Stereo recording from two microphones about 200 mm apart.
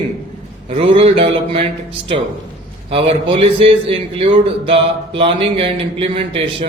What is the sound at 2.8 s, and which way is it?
A man's voice, 30° right (ahead or behind).